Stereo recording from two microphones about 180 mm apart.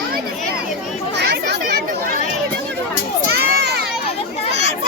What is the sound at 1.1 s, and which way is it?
Chatter, 65° right (ahead or behind).